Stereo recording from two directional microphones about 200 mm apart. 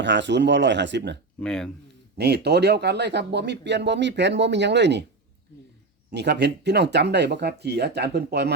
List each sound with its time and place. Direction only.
0.0 s speech: 60° right (ahead or behind)
1.4 s speech: 5° left (ahead or behind)
2.1 s speech: 55° right (ahead or behind)
6.1 s speech: 60° right (ahead or behind)